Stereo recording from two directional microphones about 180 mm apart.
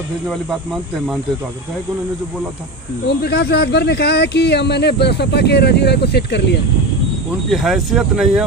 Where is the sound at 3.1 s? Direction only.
65° left (ahead or behind).